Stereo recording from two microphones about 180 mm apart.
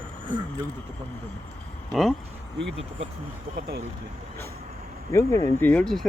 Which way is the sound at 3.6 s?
60° right (ahead or behind).